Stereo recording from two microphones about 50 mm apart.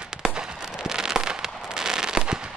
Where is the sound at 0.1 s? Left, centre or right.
Centre.